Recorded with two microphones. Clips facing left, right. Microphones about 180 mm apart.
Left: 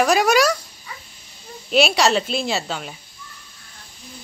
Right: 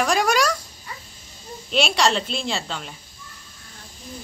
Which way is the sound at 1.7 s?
5° left (ahead or behind).